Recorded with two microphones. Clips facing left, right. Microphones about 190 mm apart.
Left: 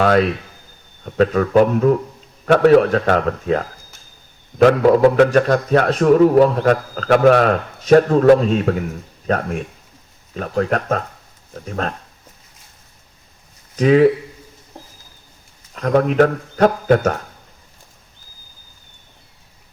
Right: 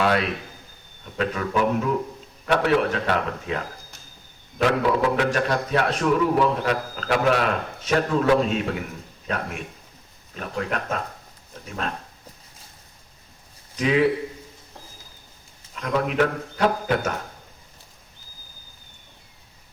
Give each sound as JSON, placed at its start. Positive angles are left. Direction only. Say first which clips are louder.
{"t": 1.0, "sound": "a man's voice", "louder": "left 10 dB", "side_deg": 50}
{"t": 4.6, "sound": "a man's voice", "louder": "left 9 dB", "side_deg": 45}
{"t": 13.7, "sound": "a man's voice", "louder": "left 8 dB", "side_deg": 45}
{"t": 15.7, "sound": "a man's voice", "louder": "left 8 dB", "side_deg": 50}